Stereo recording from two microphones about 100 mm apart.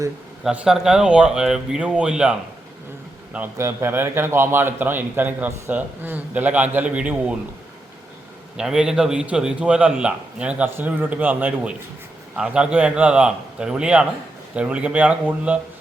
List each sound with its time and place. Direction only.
0.5 s a man's voice: 10° right (ahead or behind)
3.6 s a man's voice: 30° right (ahead or behind)
8.5 s a man's voice: 5° right (ahead or behind)